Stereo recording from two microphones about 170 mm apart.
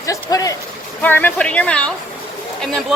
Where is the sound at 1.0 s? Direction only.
10° left (ahead or behind).